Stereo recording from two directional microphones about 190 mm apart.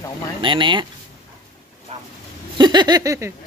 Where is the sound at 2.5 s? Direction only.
25° right (ahead or behind).